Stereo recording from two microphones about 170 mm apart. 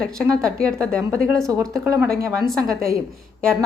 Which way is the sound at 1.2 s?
55° right (ahead or behind).